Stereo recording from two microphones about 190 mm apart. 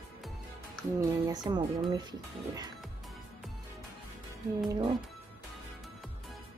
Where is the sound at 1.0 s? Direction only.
20° right (ahead or behind).